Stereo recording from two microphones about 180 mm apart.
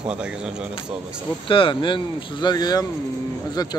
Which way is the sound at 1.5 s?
30° left (ahead or behind).